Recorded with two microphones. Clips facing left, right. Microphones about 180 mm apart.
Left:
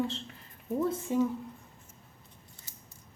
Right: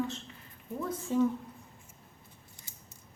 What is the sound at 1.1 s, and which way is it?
Speech, 15° left (ahead or behind).